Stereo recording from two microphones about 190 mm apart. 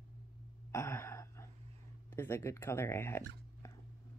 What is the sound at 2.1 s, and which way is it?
Speech, 10° left (ahead or behind).